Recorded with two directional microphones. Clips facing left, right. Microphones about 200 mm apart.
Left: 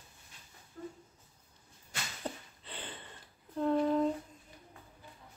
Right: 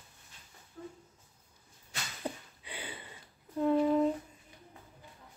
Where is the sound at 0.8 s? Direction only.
5° right (ahead or behind).